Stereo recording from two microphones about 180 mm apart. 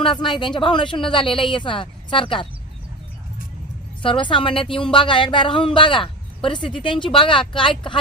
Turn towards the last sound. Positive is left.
turn(degrees=30)  # may be behind; listen again after turning